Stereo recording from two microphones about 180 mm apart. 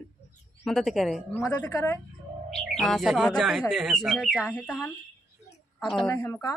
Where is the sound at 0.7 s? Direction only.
Centre (ahead or behind).